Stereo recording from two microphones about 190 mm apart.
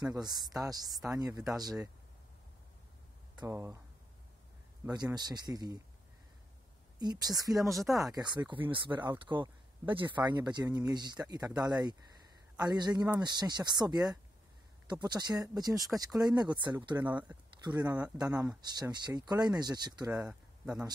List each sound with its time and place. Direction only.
0.0 s speech: 20° right (ahead or behind)
3.3 s speech: 15° right (ahead or behind)
4.9 s speech: 20° right (ahead or behind)
7.0 s speech: 20° right (ahead or behind)
7.7 s speech: centre (ahead or behind)
8.0 s speech: 20° right (ahead or behind)
17.0 s speech: 10° right (ahead or behind)
17.6 s speech: 20° right (ahead or behind)
20.2 s a sound: 5° right (ahead or behind)